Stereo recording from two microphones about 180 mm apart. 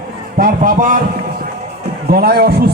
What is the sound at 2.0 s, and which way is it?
Speech, 60° right (ahead or behind).